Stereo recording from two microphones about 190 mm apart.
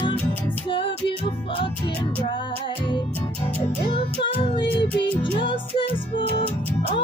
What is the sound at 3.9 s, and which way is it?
Music, 25° left (ahead or behind).